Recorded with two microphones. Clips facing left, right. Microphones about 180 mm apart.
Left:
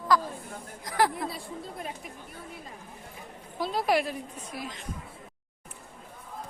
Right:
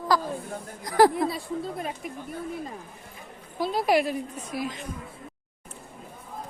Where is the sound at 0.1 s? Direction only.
35° right (ahead or behind).